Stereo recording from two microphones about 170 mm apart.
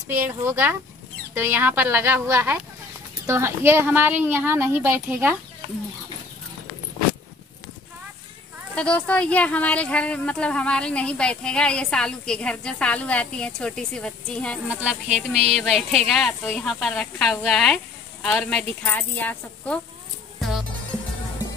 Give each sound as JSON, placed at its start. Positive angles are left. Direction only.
{"t": 0.1, "sound": "speech", "side_deg": -15}
{"t": 8.7, "sound": "speech", "side_deg": 5}
{"t": 15.0, "sound": "a sound", "side_deg": -40}
{"t": 15.6, "sound": "speech", "side_deg": 0}
{"t": 20.3, "sound": "music", "side_deg": 0}